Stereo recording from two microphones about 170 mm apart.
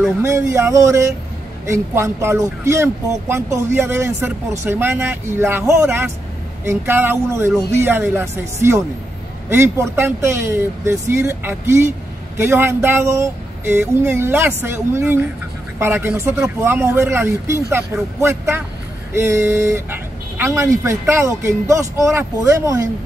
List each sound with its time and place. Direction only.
0.2 s speech: 15° right (ahead or behind)